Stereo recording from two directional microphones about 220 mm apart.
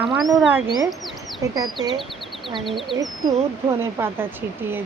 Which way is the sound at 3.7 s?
10° right (ahead or behind).